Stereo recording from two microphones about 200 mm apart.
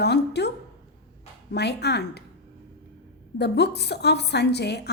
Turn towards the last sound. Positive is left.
turn(degrees=55)  # may be behind; listen again after turning